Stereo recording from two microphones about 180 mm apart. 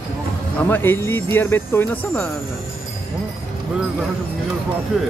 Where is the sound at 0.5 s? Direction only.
10° left (ahead or behind).